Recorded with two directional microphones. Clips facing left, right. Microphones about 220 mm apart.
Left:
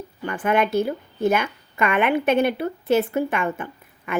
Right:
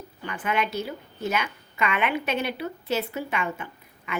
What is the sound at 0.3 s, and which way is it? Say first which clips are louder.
A woman's voice: left 7 dB; 50° left (ahead or behind).